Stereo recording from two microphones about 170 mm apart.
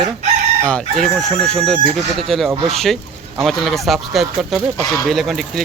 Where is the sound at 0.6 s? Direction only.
5° left (ahead or behind).